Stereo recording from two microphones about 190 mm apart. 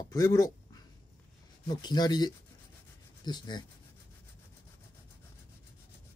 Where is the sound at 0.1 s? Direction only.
20° left (ahead or behind).